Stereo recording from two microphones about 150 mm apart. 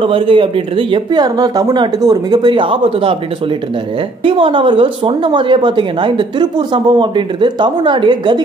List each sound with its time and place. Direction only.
0.0 s a woman's voice: 35° right (ahead or behind)
4.2 s a woman's voice: 35° right (ahead or behind)